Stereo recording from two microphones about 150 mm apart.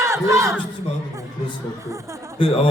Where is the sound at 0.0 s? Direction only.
20° right (ahead or behind).